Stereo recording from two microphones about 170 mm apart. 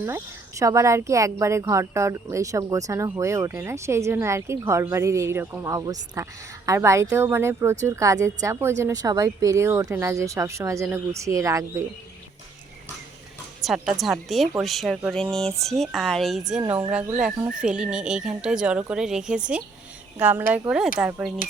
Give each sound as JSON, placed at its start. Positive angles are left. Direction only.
{"t": 0.6, "sound": "speech", "side_deg": -20}
{"t": 13.6, "sound": "a woman's voice", "side_deg": 0}